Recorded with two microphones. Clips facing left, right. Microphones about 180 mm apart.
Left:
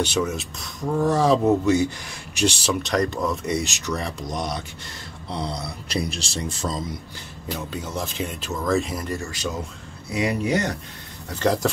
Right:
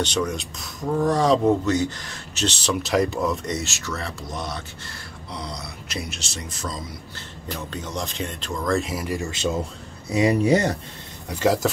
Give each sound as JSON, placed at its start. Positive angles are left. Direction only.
{"t": 0.0, "sound": "speech", "side_deg": 5}
{"t": 2.7, "sound": "speech", "side_deg": -5}
{"t": 3.4, "sound": "speech", "side_deg": 15}
{"t": 5.3, "sound": "speech", "side_deg": 30}
{"t": 7.4, "sound": "speech", "side_deg": 10}
{"t": 9.3, "sound": "speech", "side_deg": -25}
{"t": 11.2, "sound": "speech", "side_deg": -10}